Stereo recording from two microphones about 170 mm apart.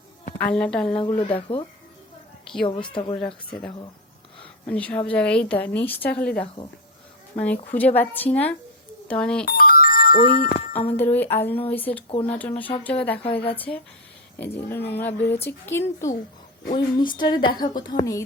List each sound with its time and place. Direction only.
0.3 s a woman's voice: 5° left (ahead or behind)
1.3 s speech: 30° left (ahead or behind)
2.4 s a sound: centre (ahead or behind)
2.6 s a woman's voice: 30° left (ahead or behind)
3.2 s a woman's voice: 5° left (ahead or behind)
9.5 s music: 60° left (ahead or behind)
10.5 s a sound: 40° left (ahead or behind)
10.9 s a woman's voice: 10° left (ahead or behind)
16.7 s a woman's voice: 25° left (ahead or behind)